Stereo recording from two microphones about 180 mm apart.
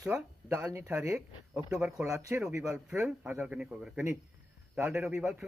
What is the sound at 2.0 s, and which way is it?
Speech, 15° right (ahead or behind).